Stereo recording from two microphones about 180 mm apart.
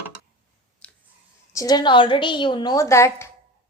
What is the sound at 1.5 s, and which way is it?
A woman's voice, 20° left (ahead or behind).